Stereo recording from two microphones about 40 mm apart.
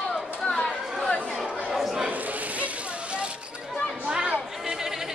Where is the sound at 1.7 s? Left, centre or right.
Centre.